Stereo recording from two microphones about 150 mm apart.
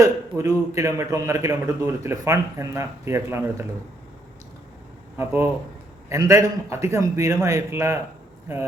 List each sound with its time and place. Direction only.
0.0 s a man's voice: 20° right (ahead or behind)
5.1 s a man's voice: 15° right (ahead or behind)